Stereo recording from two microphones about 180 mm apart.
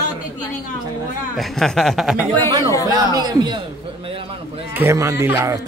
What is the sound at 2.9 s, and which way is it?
Speech, 20° right (ahead or behind).